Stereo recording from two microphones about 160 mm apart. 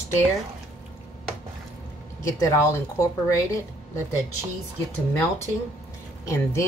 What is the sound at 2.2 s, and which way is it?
A woman's voice, 20° left (ahead or behind).